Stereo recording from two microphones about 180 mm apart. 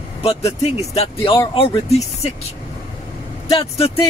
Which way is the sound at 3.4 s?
30° left (ahead or behind).